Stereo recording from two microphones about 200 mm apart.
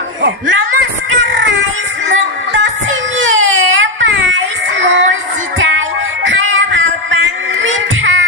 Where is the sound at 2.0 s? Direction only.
65° right (ahead or behind).